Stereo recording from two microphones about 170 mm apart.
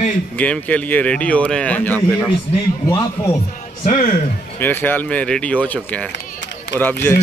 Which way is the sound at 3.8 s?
45° left (ahead or behind).